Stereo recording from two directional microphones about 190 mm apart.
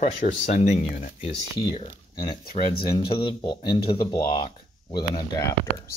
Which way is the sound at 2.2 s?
25° left (ahead or behind).